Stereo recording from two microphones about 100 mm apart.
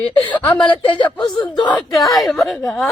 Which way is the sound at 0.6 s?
55° left (ahead or behind).